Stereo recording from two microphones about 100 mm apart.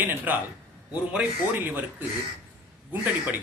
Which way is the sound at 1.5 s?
20° right (ahead or behind).